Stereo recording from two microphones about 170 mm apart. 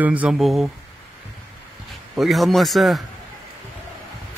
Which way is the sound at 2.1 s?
Centre (ahead or behind).